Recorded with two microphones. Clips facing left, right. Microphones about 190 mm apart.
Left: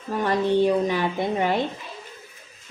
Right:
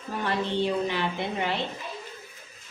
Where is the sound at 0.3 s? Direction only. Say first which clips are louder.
Left 7 dB; 45° left (ahead or behind).